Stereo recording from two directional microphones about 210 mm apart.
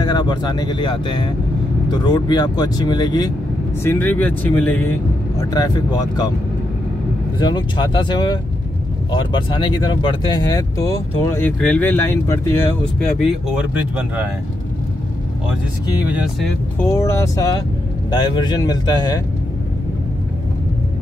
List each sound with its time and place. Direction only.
0.0 s speech: 20° left (ahead or behind)
3.8 s speech: 10° left (ahead or behind)
5.5 s speech: 20° left (ahead or behind)
7.3 s speech: 20° left (ahead or behind)
13.2 s speech: 5° right (ahead or behind)
16.1 s speech: 5° right (ahead or behind)
16.7 s speech: 15° left (ahead or behind)